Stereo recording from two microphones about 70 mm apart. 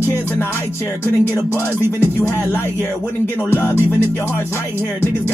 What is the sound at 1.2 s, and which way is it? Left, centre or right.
Music, left.